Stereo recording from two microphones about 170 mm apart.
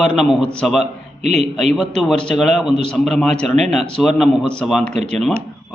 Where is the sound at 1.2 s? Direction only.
40° right (ahead or behind).